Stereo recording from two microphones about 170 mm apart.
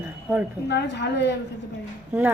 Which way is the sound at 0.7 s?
90° left.